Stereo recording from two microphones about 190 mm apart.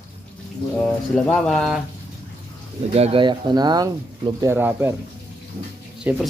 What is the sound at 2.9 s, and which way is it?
Speech, 30° right (ahead or behind).